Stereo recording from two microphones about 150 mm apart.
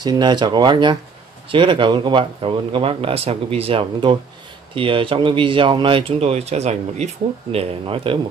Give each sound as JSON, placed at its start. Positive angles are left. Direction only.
{"t": 0.0, "sound": "speech", "side_deg": -30}